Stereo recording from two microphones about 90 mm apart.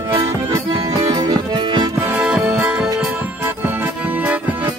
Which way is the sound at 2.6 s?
10° right (ahead or behind).